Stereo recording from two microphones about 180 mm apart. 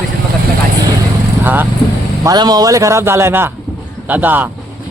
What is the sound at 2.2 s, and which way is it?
Speech, 20° right (ahead or behind).